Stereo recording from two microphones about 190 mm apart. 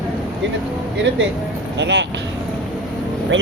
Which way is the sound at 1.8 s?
70° right (ahead or behind).